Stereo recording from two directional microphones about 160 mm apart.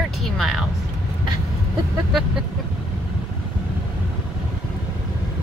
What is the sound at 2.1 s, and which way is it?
Vehicle, 5° right (ahead or behind).